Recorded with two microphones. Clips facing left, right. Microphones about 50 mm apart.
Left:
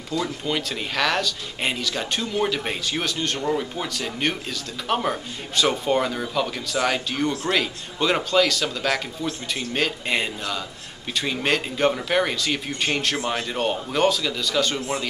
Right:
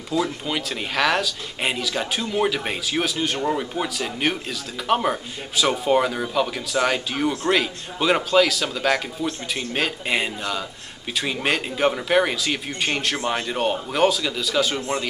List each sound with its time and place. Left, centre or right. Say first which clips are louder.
0.1 s speech: right 2 dB; centre
13.2 s speech: right 1 dB; centre
13.5 s speech: right 1 dB; centre